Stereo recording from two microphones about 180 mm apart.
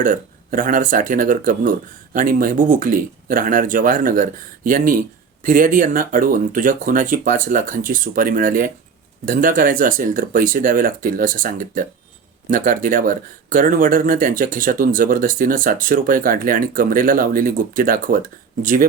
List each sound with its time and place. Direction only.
0.0 s speech: 50° right (ahead or behind)